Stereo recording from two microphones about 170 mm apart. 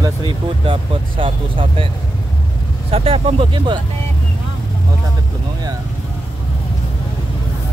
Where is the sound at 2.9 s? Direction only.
35° right (ahead or behind).